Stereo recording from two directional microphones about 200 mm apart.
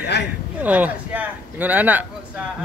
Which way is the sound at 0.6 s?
10° right (ahead or behind).